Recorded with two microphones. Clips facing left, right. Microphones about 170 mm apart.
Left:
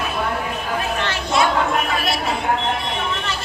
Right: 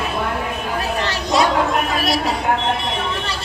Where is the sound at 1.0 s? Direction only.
40° right (ahead or behind).